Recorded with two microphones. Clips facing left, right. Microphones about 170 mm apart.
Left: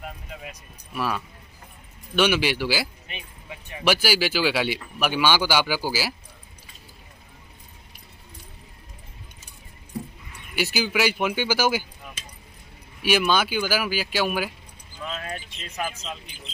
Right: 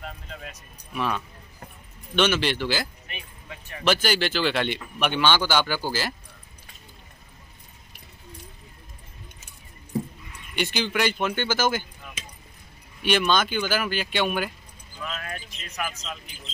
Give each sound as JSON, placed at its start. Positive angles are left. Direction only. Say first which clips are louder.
{"t": 0.0, "sound": "speech", "louder": "left 1 dB", "side_deg": 10}
{"t": 10.5, "sound": "speech", "louder": "left 1 dB", "side_deg": 5}
{"t": 13.0, "sound": "speech", "louder": "left 1 dB", "side_deg": 5}
{"t": 15.0, "sound": "speech", "louder": "left 2 dB", "side_deg": 20}